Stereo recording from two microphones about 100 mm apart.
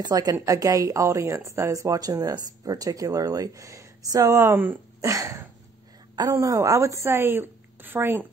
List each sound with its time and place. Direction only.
0.0 s a woman's voice: 35° right (ahead or behind); by 8.3 s 20° right (ahead or behind)